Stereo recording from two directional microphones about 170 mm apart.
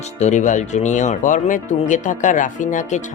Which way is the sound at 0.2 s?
45° left (ahead or behind).